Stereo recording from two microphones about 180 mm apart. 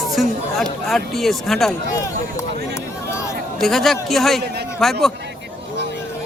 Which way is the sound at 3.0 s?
15° left (ahead or behind).